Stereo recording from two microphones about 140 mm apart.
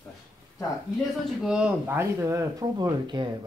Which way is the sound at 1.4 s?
5° right (ahead or behind).